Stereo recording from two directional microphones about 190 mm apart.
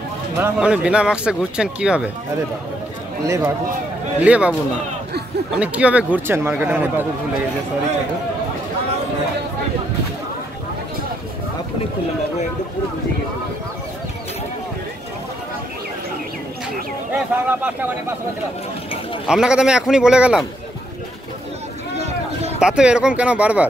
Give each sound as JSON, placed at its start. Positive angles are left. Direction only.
{"t": 0.4, "sound": "speech", "side_deg": -5}
{"t": 3.3, "sound": "speech", "side_deg": -15}
{"t": 4.2, "sound": "speech", "side_deg": -5}
{"t": 5.6, "sound": "speech", "side_deg": -5}
{"t": 17.1, "sound": "speech", "side_deg": -10}
{"t": 19.2, "sound": "speech", "side_deg": -5}
{"t": 21.9, "sound": "a sound", "side_deg": -35}
{"t": 22.6, "sound": "speech", "side_deg": -5}